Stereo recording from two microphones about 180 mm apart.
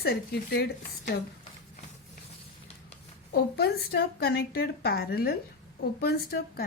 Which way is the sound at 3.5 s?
65° left (ahead or behind).